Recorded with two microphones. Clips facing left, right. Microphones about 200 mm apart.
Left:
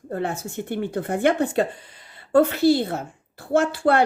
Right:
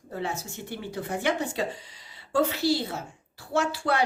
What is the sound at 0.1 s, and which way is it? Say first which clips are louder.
Speech: left 6 dB; 55° left (ahead or behind).